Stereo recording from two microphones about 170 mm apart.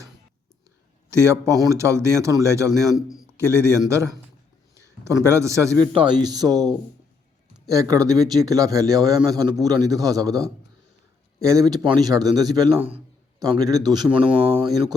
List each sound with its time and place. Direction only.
1.1 s a man's voice: 15° right (ahead or behind)
5.9 s a man's voice: 30° right (ahead or behind)